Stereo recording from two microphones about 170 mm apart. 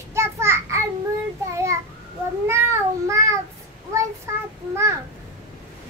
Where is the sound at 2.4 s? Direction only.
15° right (ahead or behind).